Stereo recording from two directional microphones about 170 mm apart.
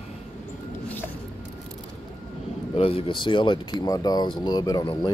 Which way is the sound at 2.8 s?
30° left (ahead or behind).